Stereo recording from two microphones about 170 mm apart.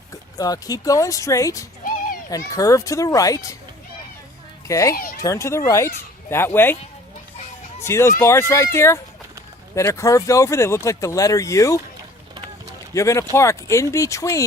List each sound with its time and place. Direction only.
0.1 s a child's voice: 20° left (ahead or behind)
4.7 s speech: 20° left (ahead or behind)
7.9 s speech: 15° left (ahead or behind)
12.9 s a child's voice: 20° left (ahead or behind)